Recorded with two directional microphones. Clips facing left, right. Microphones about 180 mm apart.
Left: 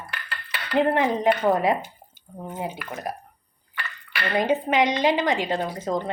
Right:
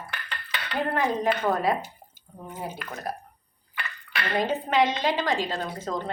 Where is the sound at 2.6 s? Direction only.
15° left (ahead or behind).